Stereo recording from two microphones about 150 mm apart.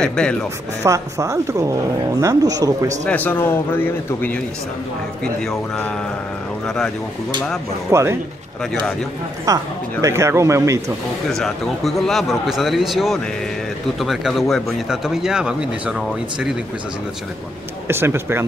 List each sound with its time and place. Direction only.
0.0 s speech: 5° left (ahead or behind)
0.8 s speech: 20° right (ahead or behind)
3.1 s a man's voice: 10° left (ahead or behind)
5.4 s a man's voice: 5° left (ahead or behind)
7.9 s speech: 20° right (ahead or behind)
9.5 s speech: 25° right (ahead or behind)
11.2 s speech: centre (ahead or behind)
17.8 s speech: 15° right (ahead or behind)